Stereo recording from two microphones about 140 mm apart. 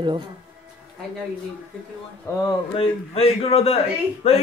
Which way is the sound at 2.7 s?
40° left (ahead or behind).